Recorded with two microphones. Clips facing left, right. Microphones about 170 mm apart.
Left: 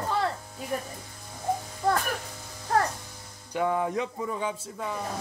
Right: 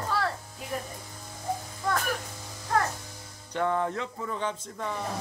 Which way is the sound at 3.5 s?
10° left (ahead or behind).